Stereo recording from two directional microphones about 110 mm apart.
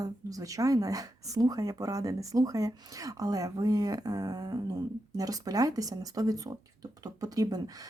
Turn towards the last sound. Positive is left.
turn(degrees=-35)  # may be behind; listen again after turning